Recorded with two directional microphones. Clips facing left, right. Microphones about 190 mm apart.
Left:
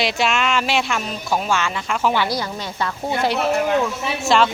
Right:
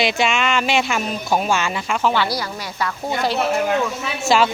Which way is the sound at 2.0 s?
15° left (ahead or behind).